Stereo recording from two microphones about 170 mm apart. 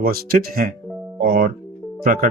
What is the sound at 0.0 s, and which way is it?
Speech, 60° right (ahead or behind).